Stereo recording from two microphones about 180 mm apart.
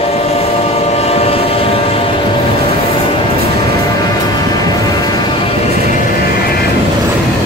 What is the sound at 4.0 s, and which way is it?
Music, 20° left (ahead or behind).